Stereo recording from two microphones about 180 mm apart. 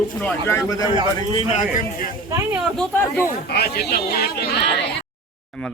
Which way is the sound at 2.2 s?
15° right (ahead or behind).